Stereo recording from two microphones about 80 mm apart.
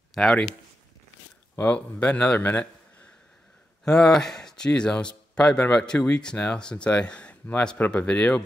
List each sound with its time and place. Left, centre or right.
0.1 s speech: centre
1.6 s speech: centre
3.8 s speech: centre